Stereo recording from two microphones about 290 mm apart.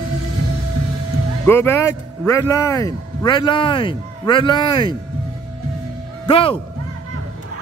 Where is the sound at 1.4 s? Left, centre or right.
Centre.